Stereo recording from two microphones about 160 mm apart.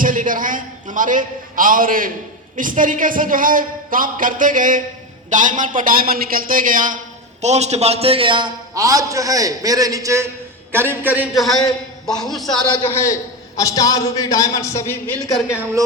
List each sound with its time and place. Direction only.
0.0 s a woman's voice: 55° right (ahead or behind)
7.4 s a man's voice: 45° right (ahead or behind); by 11.3 s 10° right (ahead or behind)
11.3 s a man's voice: centre (ahead or behind)
12.9 s a man's voice: 15° left (ahead or behind)